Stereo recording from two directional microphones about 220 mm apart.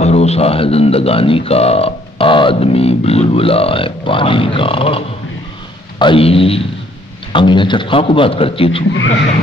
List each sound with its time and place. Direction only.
0.0 s speech: 30° left (ahead or behind)